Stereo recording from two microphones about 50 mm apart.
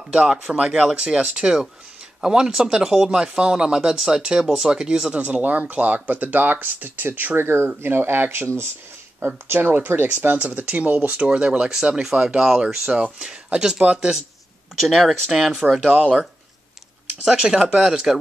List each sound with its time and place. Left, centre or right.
0.1 s speech: centre
5.1 s speech: right
9.5 s speech: right
10.3 s speech: right
11.1 s speech: right
14.8 s speech: centre
17.4 s speech: centre